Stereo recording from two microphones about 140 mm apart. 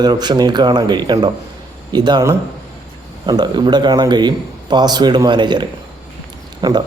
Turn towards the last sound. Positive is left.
turn(degrees=-30)  # may be behind; listen again after turning